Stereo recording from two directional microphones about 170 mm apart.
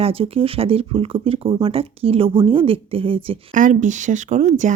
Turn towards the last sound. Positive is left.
turn(degrees=-45)  # may be behind; listen again after turning